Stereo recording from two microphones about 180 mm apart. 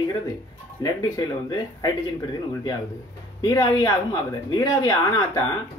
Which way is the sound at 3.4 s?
20° left (ahead or behind).